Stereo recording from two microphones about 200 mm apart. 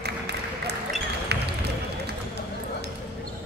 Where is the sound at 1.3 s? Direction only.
55° right (ahead or behind).